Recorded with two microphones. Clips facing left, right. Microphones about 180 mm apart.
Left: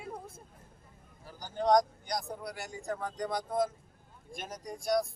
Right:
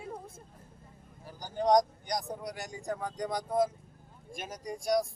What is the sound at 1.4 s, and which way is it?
Speech, 15° right (ahead or behind).